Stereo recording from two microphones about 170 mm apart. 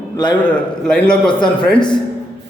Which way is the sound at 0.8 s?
5° left (ahead or behind).